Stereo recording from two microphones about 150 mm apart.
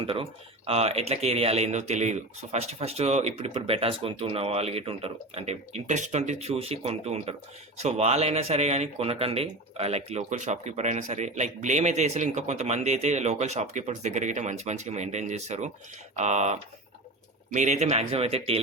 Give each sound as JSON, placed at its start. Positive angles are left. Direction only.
{"t": 0.0, "sound": "speech", "side_deg": -35}